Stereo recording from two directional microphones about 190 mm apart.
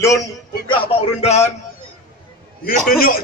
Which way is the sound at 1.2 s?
35° left (ahead or behind).